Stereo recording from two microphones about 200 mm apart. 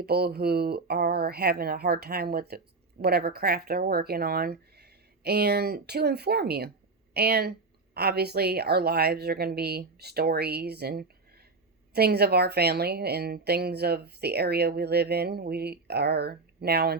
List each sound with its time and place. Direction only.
0.0 s a woman's voice: 50° right (ahead or behind)